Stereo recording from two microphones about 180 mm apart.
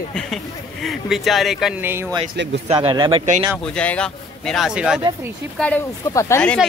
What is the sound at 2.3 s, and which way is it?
Speech, 80° right.